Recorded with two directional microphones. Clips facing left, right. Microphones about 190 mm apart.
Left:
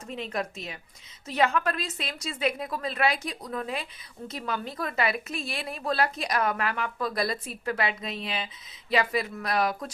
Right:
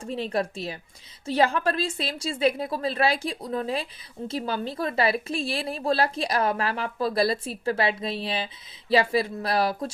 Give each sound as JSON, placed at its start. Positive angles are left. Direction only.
{"t": 0.0, "sound": "a woman's voice", "side_deg": -30}